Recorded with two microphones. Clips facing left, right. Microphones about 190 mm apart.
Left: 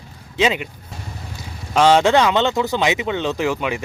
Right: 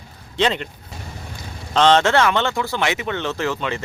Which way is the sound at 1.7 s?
10° left (ahead or behind).